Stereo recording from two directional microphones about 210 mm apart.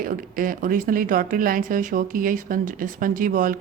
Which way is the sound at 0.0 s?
40° right (ahead or behind).